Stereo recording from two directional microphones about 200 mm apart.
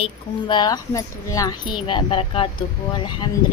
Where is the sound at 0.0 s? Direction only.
25° left (ahead or behind).